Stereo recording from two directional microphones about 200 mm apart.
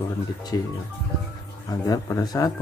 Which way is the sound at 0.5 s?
15° left (ahead or behind).